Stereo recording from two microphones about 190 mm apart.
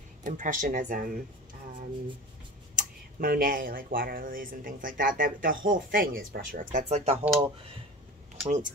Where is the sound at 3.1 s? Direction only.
50° right (ahead or behind).